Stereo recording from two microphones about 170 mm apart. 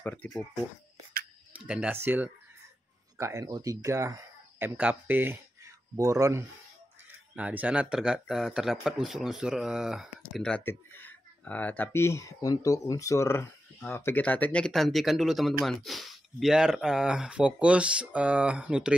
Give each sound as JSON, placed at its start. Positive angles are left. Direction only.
{"t": 0.0, "sound": "speech", "side_deg": 10}
{"t": 1.7, "sound": "speech", "side_deg": -10}
{"t": 7.3, "sound": "speech", "side_deg": -5}